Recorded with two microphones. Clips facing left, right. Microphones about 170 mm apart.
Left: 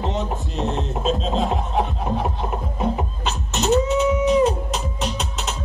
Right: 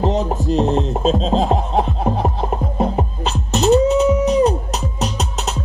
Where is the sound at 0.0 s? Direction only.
35° right (ahead or behind).